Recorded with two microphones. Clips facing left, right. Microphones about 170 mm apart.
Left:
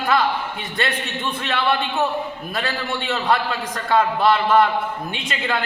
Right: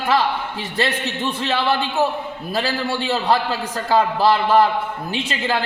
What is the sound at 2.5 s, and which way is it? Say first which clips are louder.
A man's voice: right 5 dB; 30° right (ahead or behind).